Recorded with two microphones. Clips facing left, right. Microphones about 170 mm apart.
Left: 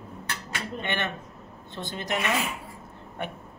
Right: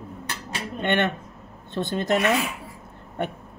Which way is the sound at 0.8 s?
60° right (ahead or behind).